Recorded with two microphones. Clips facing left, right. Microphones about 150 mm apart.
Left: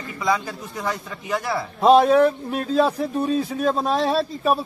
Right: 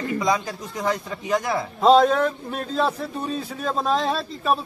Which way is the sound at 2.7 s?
10° left (ahead or behind).